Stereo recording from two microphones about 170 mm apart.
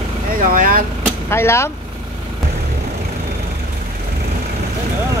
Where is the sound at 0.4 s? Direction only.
55° right (ahead or behind).